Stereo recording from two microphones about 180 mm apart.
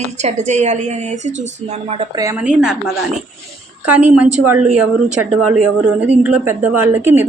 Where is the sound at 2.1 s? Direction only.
15° right (ahead or behind).